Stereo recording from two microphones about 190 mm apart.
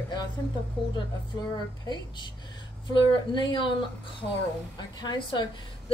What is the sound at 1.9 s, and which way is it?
A woman's voice, 25° left (ahead or behind).